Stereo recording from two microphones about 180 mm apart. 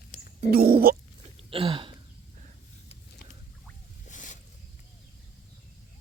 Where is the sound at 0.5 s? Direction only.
55° right (ahead or behind).